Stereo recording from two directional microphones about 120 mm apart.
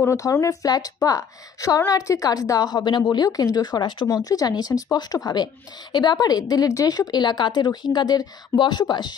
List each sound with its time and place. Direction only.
0.0 s a woman's voice: 25° left (ahead or behind)